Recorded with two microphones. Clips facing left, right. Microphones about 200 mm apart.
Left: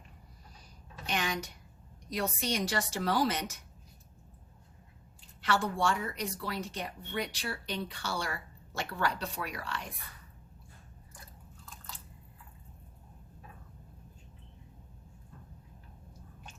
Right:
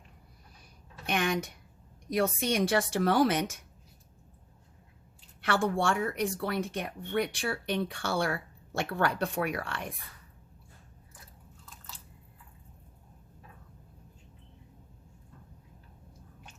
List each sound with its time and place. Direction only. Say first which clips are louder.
0.6 s a sound: right 3 dB; 55° right (ahead or behind)
2.0 s speech: right 5 dB; 55° right (ahead or behind)
5.4 s speech: right 2 dB; 55° right (ahead or behind)